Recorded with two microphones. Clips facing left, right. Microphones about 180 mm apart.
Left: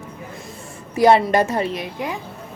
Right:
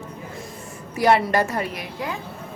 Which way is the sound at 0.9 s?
25° left (ahead or behind).